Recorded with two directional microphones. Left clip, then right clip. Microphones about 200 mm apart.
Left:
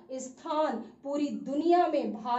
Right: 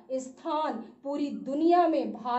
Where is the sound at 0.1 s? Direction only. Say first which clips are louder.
Right 2 dB; 35° right (ahead or behind).